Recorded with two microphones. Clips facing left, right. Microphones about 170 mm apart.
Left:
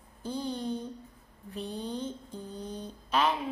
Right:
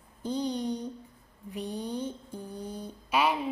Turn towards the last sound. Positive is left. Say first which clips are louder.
# right 1 dB
turn(degrees=-10)  # may be behind; listen again after turning